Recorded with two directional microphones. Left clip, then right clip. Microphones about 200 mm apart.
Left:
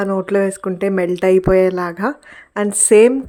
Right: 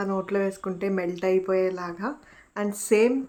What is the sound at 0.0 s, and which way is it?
Speech, 35° left (ahead or behind).